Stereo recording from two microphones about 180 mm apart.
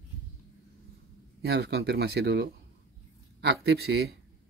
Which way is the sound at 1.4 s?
65° right (ahead or behind).